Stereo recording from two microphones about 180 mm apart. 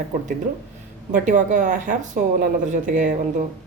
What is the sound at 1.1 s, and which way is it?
Speech, 45° right (ahead or behind).